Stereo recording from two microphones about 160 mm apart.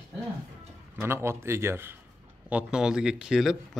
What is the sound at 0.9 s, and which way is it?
A man's voice, 15° right (ahead or behind).